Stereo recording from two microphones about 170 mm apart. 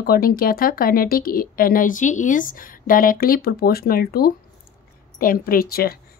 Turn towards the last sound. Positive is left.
turn(degrees=60)  # may be behind; listen again after turning